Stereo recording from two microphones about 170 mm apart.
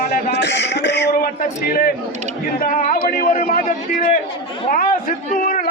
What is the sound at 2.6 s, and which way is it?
A man's voice, 55° left (ahead or behind).